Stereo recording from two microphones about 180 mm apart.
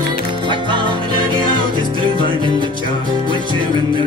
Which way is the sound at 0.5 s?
25° right (ahead or behind).